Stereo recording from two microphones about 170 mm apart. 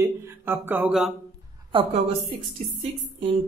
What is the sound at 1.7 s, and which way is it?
Speech, 35° right (ahead or behind).